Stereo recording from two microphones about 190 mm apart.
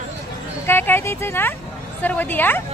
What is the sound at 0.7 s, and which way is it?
Speech, 10° left (ahead or behind).